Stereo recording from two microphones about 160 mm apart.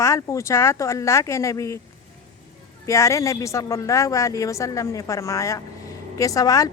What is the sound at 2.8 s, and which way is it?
A woman's voice, 20° left (ahead or behind).